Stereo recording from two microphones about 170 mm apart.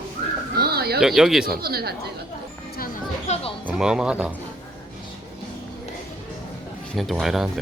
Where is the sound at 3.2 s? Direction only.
40° left (ahead or behind).